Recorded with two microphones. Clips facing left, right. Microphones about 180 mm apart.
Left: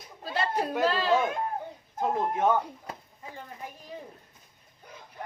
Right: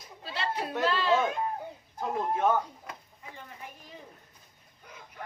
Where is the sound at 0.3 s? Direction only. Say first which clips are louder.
Left 4 dB; 45° left (ahead or behind).